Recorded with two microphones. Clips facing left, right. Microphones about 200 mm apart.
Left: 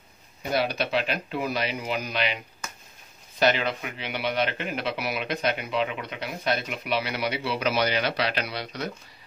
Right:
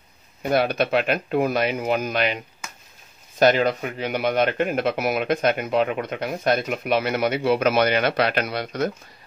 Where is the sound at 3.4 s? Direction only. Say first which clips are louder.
Right 6 dB; 45° right (ahead or behind).